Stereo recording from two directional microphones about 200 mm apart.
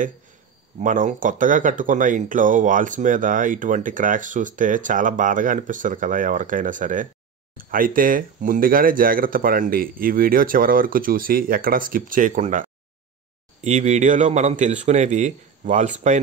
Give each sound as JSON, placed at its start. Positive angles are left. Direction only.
{"t": 0.7, "sound": "speech", "side_deg": -40}